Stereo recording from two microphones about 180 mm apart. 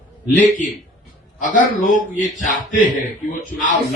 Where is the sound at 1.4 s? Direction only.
45° left (ahead or behind).